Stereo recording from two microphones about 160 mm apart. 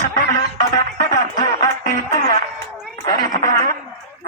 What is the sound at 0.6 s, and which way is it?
Music, 25° left (ahead or behind).